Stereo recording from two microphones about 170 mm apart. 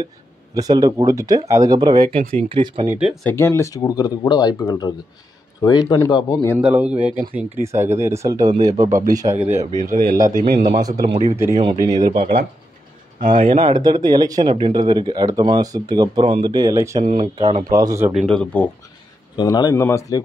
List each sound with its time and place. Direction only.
0.6 s speech: 20° right (ahead or behind)
2.9 s a man's voice: 5° right (ahead or behind)
3.3 s speech: 15° left (ahead or behind)
6.5 s speech: 10° right (ahead or behind)
10.2 s a man's voice: 55° right (ahead or behind)
11.2 s speech: 15° right (ahead or behind)
11.5 s speech: 25° right (ahead or behind)
12.2 s a man's voice: 55° right (ahead or behind)
13.6 s speech: 25° right (ahead or behind)
17.0 s speech: 30° right (ahead or behind)
17.6 s speech: 20° right (ahead or behind)
18.1 s a man's voice: centre (ahead or behind)
19.3 s speech: 25° left (ahead or behind)